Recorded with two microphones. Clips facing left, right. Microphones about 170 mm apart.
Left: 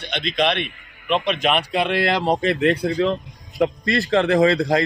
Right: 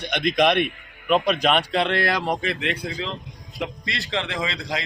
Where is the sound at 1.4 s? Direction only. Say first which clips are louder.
Left 1 dB; 10° left (ahead or behind); by 4.8 s 50° left (ahead or behind).